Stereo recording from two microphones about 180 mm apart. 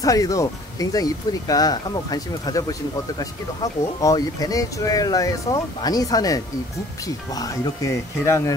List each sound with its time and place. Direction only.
0.0 s speech: 20° left (ahead or behind)